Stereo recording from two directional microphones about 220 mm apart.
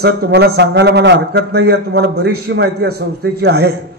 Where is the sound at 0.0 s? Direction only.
45° right (ahead or behind).